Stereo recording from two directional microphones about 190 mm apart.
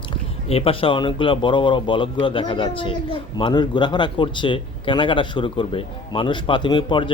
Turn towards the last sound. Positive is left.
turn(degrees=25)  # may be behind; listen again after turning